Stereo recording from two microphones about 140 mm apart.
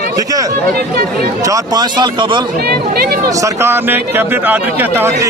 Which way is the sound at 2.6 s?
90° right.